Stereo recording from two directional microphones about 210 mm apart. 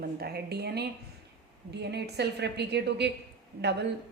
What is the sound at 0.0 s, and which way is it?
A woman's voice, 50° right (ahead or behind).